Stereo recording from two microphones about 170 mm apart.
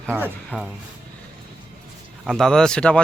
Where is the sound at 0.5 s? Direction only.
10° left (ahead or behind).